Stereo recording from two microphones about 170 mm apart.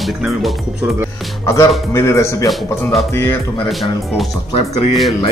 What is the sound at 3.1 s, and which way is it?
Speech, 15° left (ahead or behind).